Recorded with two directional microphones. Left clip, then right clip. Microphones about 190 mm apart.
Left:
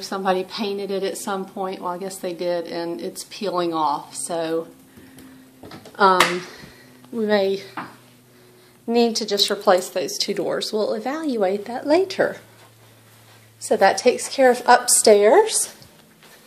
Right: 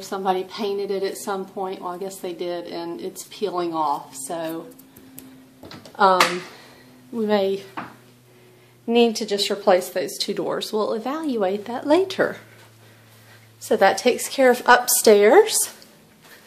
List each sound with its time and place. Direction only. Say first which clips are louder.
0.1 s a woman's voice: left 1 dB; 20° left (ahead or behind)
6.0 s a woman's voice: left 1 dB; 5° left (ahead or behind)
7.2 s speech: left 1 dB; centre (ahead or behind)
8.8 s speech: right 1 dB; 5° right (ahead or behind)
13.6 s speech: left 1 dB; 10° right (ahead or behind)